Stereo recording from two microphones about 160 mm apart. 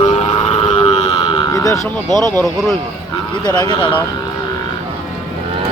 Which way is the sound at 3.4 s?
25° left (ahead or behind).